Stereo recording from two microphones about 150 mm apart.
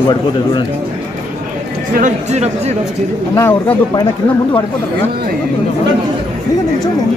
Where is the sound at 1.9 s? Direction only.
50° right (ahead or behind).